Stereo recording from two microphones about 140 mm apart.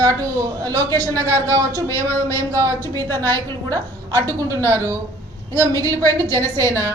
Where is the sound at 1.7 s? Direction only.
15° left (ahead or behind).